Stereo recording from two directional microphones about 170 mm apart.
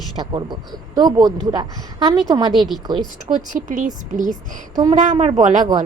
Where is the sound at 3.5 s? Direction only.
50° right (ahead or behind).